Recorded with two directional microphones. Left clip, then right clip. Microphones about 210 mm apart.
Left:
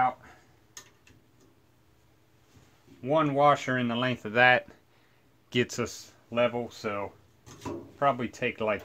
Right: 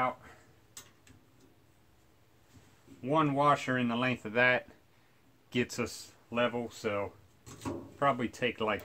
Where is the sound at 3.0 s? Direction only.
20° left (ahead or behind).